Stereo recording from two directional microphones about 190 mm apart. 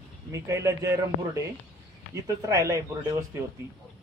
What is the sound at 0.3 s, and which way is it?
Speech, 15° right (ahead or behind).